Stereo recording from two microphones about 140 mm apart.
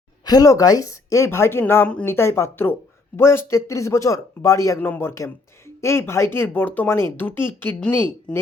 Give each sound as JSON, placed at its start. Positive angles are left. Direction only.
{"t": 0.3, "sound": "a woman's voice", "side_deg": 25}